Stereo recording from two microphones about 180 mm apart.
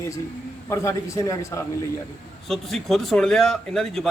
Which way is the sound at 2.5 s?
Centre (ahead or behind).